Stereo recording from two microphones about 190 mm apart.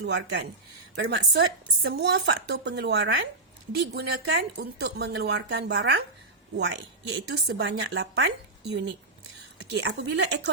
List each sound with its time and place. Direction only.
0.0 s speech: 65° right (ahead or behind)